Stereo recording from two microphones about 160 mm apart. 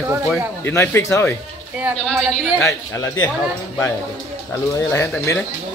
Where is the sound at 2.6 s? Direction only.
20° left (ahead or behind).